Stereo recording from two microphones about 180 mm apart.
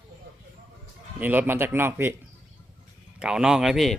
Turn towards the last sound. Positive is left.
turn(degrees=0)  # may be behind; listen again after turning